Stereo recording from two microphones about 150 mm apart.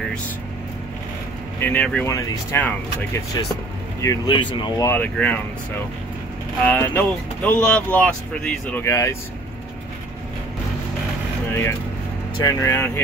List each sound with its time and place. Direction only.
1.6 s speech: 10° left (ahead or behind); by 4.8 s 30° left (ahead or behind)
4.8 s speech: 10° left (ahead or behind)
6.6 s speech: 10° left (ahead or behind)
8.8 s speech: 20° left (ahead or behind)
12.4 s speech: 20° left (ahead or behind)